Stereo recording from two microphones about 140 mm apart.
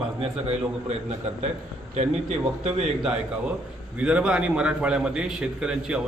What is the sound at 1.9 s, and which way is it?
Speech, 55° right (ahead or behind).